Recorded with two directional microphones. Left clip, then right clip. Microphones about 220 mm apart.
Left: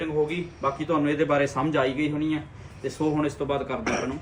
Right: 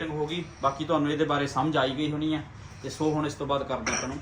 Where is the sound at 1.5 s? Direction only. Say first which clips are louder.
Left 1 dB; 10° left (ahead or behind).